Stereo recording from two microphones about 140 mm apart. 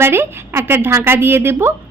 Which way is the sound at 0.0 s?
15° right (ahead or behind).